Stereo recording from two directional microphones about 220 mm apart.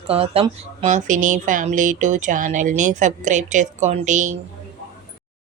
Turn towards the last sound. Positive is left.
turn(degrees=-35)  # may be behind; listen again after turning